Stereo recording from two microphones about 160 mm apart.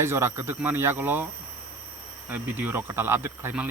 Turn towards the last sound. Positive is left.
turn(degrees=-10)  # may be behind; listen again after turning